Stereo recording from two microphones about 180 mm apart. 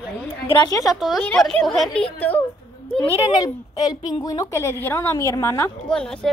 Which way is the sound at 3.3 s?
20° left (ahead or behind).